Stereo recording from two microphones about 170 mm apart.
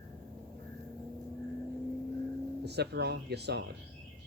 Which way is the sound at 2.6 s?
75° right (ahead or behind).